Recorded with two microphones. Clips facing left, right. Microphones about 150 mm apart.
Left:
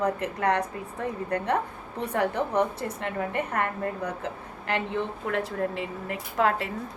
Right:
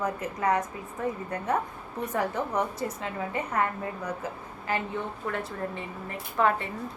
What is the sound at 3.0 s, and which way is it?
A woman's voice, 60° left (ahead or behind).